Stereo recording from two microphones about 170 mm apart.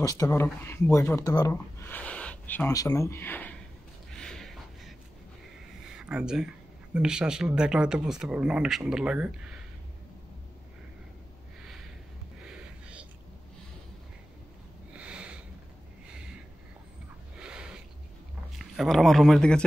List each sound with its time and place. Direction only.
0.0 s speech: 20° left (ahead or behind)
4.1 s a sound: 5° left (ahead or behind)
5.9 s speech: 5° right (ahead or behind)
12.4 s music: 5° right (ahead or behind)
15.0 s sniff: 5° right (ahead or behind)
17.4 s a sound: 5° right (ahead or behind)
18.6 s speech: centre (ahead or behind)